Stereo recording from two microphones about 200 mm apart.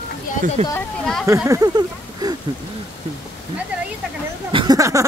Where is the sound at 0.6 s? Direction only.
35° right (ahead or behind).